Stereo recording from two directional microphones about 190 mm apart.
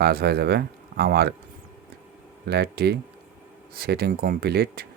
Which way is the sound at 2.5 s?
60° right (ahead or behind).